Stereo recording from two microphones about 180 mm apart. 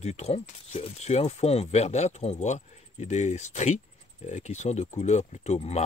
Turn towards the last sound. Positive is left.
turn(degrees=35)  # may be behind; listen again after turning